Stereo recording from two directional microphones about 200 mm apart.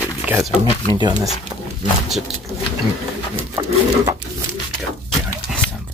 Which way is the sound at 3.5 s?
15° right (ahead or behind).